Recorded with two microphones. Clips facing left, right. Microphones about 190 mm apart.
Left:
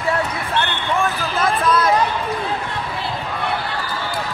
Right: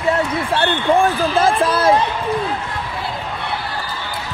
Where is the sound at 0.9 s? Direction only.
30° right (ahead or behind).